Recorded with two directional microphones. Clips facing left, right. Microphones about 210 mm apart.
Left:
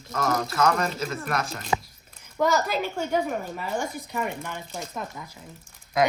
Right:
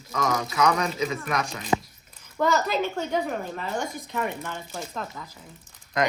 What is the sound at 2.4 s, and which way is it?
Speech, 10° left (ahead or behind).